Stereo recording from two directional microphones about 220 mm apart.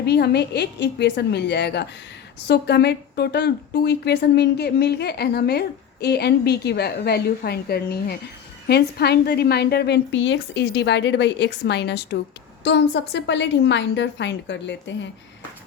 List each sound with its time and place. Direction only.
0.0 s a woman's voice: 50° left (ahead or behind)